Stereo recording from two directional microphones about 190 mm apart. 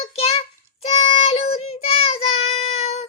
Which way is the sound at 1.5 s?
35° left (ahead or behind).